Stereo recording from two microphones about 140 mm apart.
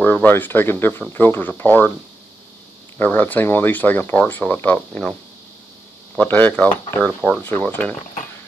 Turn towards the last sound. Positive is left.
turn(degrees=10)  # may be behind; listen again after turning